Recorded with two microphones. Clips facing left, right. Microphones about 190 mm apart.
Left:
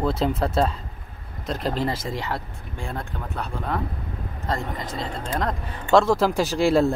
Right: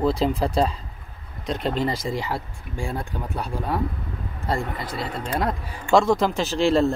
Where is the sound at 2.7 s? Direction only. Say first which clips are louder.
Right 3 dB; 10° right (ahead or behind).